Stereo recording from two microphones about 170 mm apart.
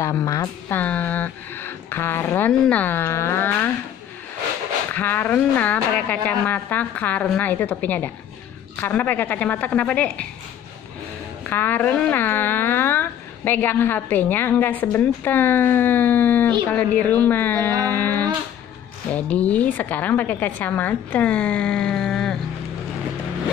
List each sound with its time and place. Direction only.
0.0 s speech: 15° left (ahead or behind)
4.9 s speech: 10° left (ahead or behind)
11.4 s speech: 10° left (ahead or behind)